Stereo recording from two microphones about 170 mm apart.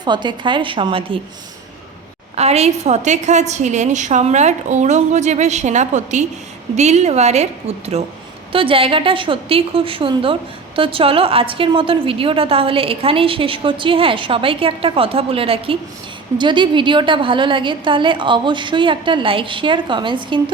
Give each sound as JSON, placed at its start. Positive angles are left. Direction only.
{"t": 0.0, "sound": "a woman's voice", "side_deg": -25}
{"t": 2.3, "sound": "a woman's voice", "side_deg": -40}